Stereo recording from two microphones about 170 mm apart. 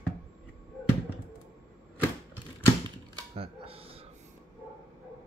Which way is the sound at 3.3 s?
35° right (ahead or behind).